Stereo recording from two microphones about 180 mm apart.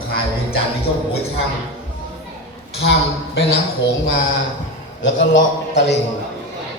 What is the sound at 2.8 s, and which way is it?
Speech, 90° left.